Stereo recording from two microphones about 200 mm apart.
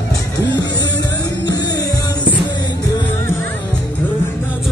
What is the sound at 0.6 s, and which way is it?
Music, 20° left (ahead or behind).